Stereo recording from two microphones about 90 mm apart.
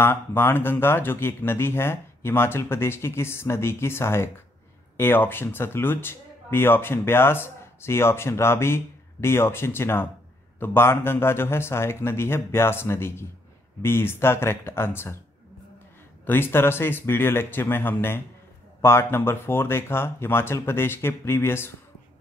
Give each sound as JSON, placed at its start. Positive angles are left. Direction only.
{"t": 0.0, "sound": "speech", "side_deg": 25}
{"t": 16.3, "sound": "speech", "side_deg": 25}